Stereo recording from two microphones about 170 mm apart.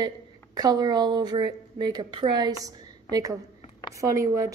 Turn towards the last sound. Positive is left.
turn(degrees=-20)  # may be behind; listen again after turning